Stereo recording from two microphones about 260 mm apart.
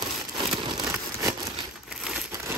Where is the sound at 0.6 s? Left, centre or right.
Centre.